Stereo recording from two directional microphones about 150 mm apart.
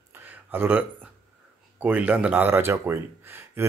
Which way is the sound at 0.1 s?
10° right (ahead or behind).